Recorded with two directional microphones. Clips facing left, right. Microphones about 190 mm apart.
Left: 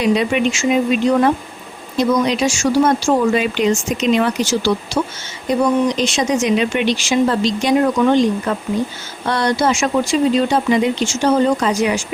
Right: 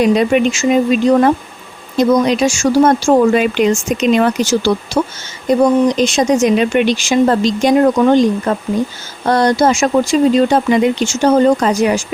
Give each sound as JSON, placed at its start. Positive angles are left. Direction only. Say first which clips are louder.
{"t": 0.0, "sound": "speech", "louder": "right 4 dB", "side_deg": -45}